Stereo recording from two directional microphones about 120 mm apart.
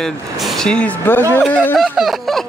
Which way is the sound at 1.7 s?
Centre (ahead or behind).